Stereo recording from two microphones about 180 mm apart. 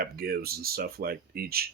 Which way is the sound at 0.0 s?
60° right (ahead or behind).